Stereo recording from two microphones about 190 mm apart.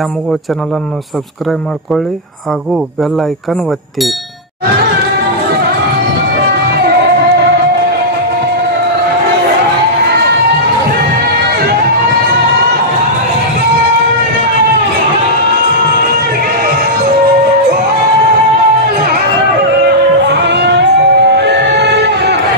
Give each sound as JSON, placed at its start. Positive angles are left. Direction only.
{"t": 20.2, "sound": "music", "side_deg": -65}